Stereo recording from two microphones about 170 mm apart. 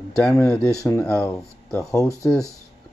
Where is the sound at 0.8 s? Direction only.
20° left (ahead or behind).